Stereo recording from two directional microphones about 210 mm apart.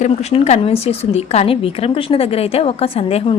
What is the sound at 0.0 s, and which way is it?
A woman's voice, 30° left (ahead or behind).